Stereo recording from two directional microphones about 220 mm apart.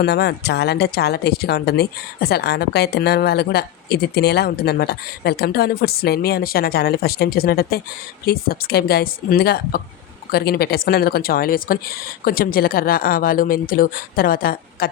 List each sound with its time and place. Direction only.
0.0 s a woman's voice: 50° left (ahead or behind)